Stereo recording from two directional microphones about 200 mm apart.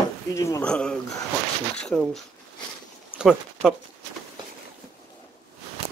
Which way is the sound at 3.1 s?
Centre (ahead or behind).